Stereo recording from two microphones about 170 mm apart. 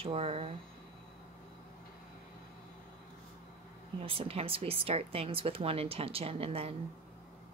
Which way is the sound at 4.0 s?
35° right (ahead or behind).